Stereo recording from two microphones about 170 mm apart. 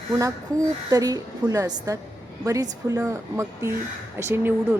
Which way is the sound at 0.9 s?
20° right (ahead or behind).